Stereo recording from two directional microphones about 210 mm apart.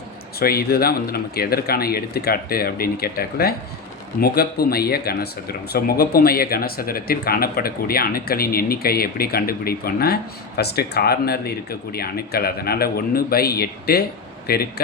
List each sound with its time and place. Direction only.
0.3 s a man's voice: 45° left (ahead or behind)